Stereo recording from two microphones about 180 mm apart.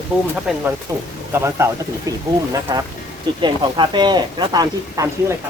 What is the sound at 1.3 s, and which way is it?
Speech, 15° right (ahead or behind).